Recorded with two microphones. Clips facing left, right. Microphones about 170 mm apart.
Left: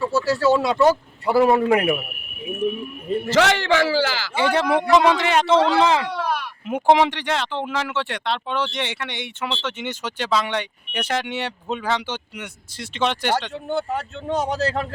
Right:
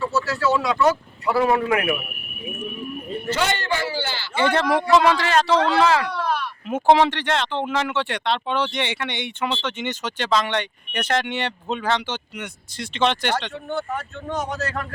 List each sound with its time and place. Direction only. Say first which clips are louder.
0.1 s a man's voice: left 6 dB; 30° left (ahead or behind)
3.3 s a man's voice: left 7 dB; 90° left
4.4 s speech: even; 10° left (ahead or behind)
13.7 s a man's voice: left 3 dB; 30° left (ahead or behind)